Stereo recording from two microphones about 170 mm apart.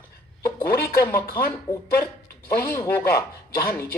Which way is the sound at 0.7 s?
65° left (ahead or behind).